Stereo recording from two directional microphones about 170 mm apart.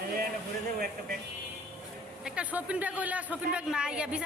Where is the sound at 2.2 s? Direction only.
5° right (ahead or behind).